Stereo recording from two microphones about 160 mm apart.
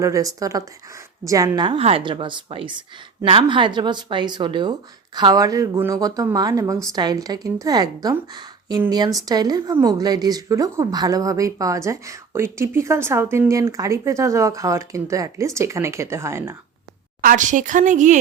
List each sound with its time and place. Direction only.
0.0 s a woman's voice: 20° right (ahead or behind)
17.2 s speech: 55° right (ahead or behind)